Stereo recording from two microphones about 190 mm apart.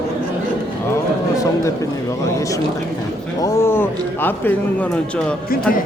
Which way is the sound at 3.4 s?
15° left (ahead or behind).